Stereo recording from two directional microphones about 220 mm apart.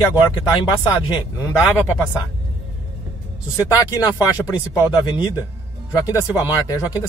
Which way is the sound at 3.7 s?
15° left (ahead or behind).